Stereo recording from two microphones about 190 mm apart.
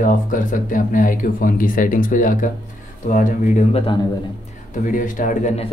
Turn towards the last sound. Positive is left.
turn(degrees=40)  # may be behind; listen again after turning